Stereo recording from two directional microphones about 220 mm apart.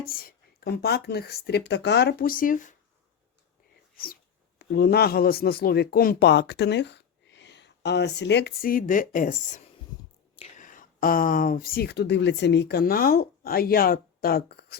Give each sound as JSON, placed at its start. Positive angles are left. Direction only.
{"t": 0.0, "sound": "speech", "side_deg": 40}
{"t": 3.9, "sound": "speech", "side_deg": 40}